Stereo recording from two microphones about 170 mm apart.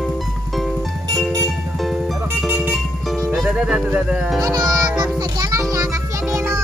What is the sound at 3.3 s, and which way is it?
Music, centre (ahead or behind).